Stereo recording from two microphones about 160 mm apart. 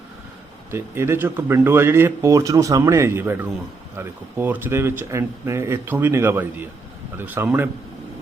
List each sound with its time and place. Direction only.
0.7 s speech: 15° right (ahead or behind)